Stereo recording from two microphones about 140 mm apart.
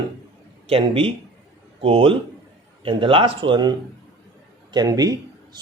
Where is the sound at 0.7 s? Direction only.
40° right (ahead or behind).